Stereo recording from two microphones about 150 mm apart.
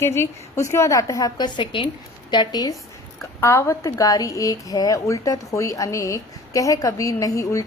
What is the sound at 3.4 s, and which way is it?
A woman's voice, 15° left (ahead or behind).